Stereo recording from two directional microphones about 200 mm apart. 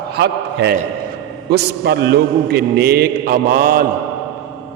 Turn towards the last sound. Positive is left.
turn(degrees=-45)  # may be behind; listen again after turning